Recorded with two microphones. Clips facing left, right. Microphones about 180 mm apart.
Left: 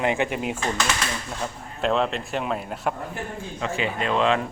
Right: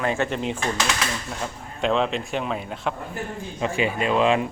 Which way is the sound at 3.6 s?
15° right (ahead or behind).